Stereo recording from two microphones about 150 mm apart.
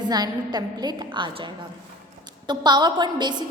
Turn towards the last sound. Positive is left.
turn(degrees=-30)  # may be behind; listen again after turning